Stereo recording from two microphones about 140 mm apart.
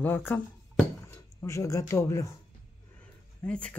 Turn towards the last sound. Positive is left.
turn(degrees=10)  # may be behind; listen again after turning